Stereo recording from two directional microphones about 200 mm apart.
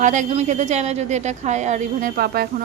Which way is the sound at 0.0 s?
40° right (ahead or behind).